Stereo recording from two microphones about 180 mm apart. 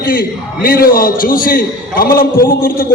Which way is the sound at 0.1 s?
55° left (ahead or behind).